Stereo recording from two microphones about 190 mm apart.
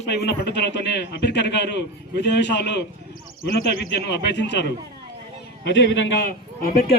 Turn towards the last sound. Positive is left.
turn(degrees=50)  # may be behind; listen again after turning